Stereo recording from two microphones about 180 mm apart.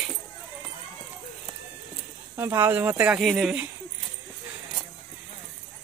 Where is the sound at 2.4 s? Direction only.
15° right (ahead or behind).